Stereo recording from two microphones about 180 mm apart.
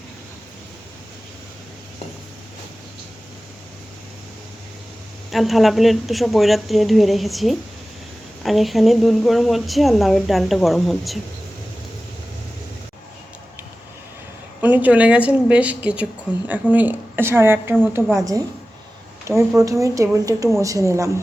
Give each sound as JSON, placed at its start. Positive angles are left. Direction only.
{"t": 5.3, "sound": "a woman's voice", "side_deg": 0}
{"t": 14.6, "sound": "speech", "side_deg": -10}
{"t": 19.5, "sound": "speech", "side_deg": -15}